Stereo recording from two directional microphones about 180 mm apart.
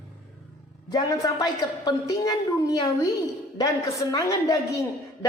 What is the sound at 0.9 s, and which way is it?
A woman's voice, 20° left (ahead or behind).